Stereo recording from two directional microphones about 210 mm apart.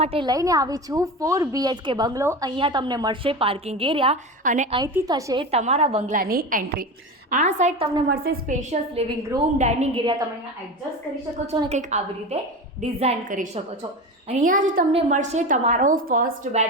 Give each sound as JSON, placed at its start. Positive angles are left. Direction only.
{"t": 0.0, "sound": "a woman's voice", "side_deg": -25}
{"t": 4.8, "sound": "a woman's voice", "side_deg": -20}
{"t": 8.0, "sound": "a woman's voice", "side_deg": -50}
{"t": 11.7, "sound": "a woman's voice", "side_deg": -30}